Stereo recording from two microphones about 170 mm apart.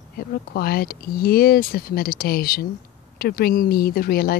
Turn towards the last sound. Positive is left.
turn(degrees=60)  # may be behind; listen again after turning